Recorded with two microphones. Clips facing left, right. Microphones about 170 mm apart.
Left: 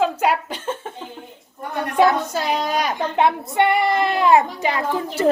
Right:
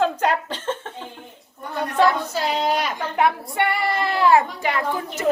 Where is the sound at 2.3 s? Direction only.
45° left (ahead or behind).